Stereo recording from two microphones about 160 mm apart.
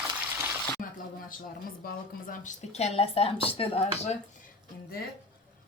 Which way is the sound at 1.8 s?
65° left (ahead or behind).